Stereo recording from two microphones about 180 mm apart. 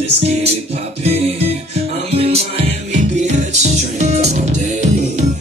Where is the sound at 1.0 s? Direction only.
35° right (ahead or behind).